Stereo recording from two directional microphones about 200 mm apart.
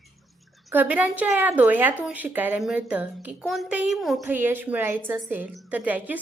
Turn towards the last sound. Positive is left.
turn(degrees=-10)  # may be behind; listen again after turning